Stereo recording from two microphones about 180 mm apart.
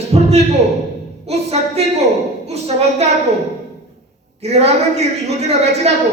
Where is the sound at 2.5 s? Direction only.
35° right (ahead or behind).